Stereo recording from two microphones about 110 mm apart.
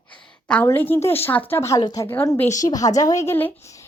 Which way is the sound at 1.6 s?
30° left (ahead or behind).